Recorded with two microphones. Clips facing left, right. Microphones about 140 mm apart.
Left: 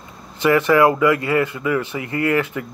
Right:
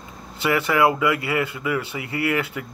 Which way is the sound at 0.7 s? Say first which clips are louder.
Left 4 dB; 20° right (ahead or behind).